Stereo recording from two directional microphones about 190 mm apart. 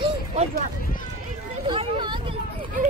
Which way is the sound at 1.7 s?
25° right (ahead or behind).